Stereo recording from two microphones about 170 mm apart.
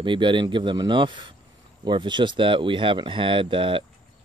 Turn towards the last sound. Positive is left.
turn(degrees=-30)  # may be behind; listen again after turning